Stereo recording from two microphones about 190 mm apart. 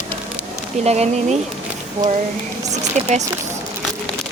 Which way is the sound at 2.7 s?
35° right (ahead or behind).